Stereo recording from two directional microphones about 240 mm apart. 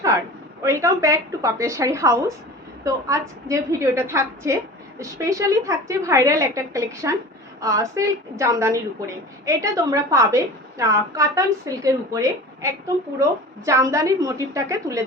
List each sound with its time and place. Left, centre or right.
0.6 s a woman's voice: centre
13.7 s a woman's voice: centre